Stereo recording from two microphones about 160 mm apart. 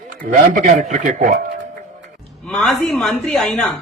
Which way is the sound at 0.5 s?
50° right (ahead or behind).